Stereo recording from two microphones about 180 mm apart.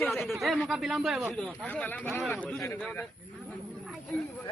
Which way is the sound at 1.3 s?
10° left (ahead or behind).